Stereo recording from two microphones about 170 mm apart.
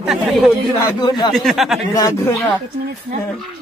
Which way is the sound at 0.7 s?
25° left (ahead or behind).